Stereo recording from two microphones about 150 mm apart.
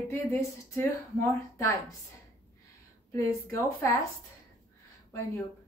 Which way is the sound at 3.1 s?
20° left (ahead or behind).